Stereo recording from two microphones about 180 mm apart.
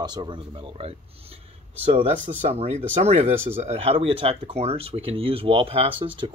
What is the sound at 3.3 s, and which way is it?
Speech, 10° right (ahead or behind).